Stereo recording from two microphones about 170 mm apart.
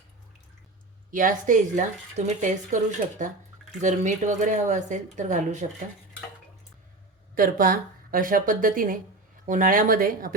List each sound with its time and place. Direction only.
1.1 s speech: 50° right (ahead or behind)
7.3 s speech: 55° right (ahead or behind)